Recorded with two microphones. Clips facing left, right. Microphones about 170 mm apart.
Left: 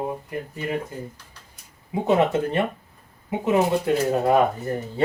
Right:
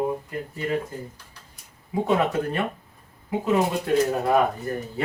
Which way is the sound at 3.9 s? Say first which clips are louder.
Right 1 dB; 25° left (ahead or behind).